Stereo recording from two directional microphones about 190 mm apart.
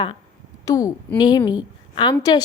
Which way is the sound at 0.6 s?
20° left (ahead or behind).